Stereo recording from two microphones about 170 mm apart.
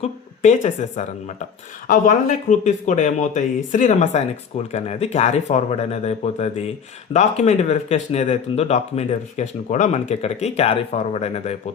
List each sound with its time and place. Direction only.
0.0 s speech: 45° left (ahead or behind)